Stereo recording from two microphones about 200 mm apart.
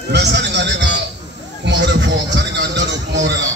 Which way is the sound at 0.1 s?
60° right (ahead or behind).